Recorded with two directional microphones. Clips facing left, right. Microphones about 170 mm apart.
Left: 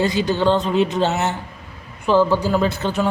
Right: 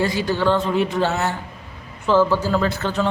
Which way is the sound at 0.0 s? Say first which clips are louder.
Left 2 dB; 20° left (ahead or behind).